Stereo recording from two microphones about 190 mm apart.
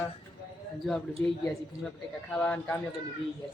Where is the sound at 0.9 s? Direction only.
Centre (ahead or behind).